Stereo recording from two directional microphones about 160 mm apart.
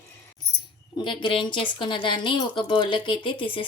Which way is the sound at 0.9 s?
30° left (ahead or behind).